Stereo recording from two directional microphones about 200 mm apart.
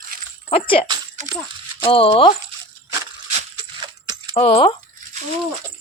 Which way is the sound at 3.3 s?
25° right (ahead or behind).